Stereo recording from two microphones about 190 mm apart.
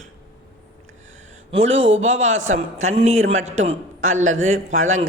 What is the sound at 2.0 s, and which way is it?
A man's voice, 35° right (ahead or behind).